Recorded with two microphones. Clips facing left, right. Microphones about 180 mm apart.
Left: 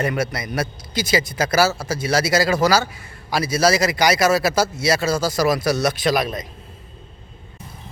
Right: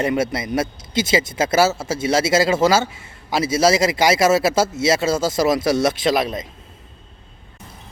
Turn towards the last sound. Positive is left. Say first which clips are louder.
# right 1 dB
turn(degrees=-25)  # may be behind; listen again after turning